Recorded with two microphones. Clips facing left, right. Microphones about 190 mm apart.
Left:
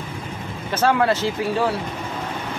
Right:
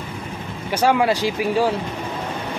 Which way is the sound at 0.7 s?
15° right (ahead or behind).